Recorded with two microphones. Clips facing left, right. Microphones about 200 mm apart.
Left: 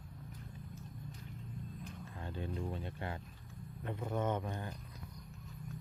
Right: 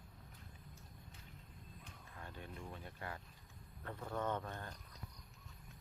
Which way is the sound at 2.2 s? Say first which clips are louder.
Left 9 dB; 30° left (ahead or behind).